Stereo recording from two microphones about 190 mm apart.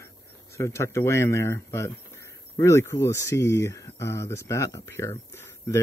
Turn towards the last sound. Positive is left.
turn(degrees=15)  # may be behind; listen again after turning